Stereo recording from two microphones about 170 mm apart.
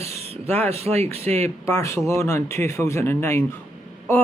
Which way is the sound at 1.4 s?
15° left (ahead or behind).